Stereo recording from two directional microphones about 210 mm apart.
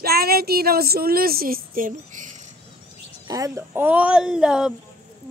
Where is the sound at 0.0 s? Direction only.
45° right (ahead or behind).